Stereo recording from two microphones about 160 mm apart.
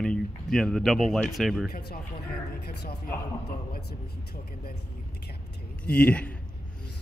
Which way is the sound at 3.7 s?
90° left.